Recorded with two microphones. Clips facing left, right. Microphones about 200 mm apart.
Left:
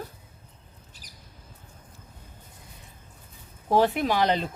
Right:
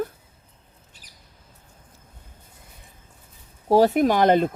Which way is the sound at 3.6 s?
40° right (ahead or behind).